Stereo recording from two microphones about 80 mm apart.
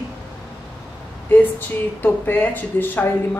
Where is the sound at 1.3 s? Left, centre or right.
Left.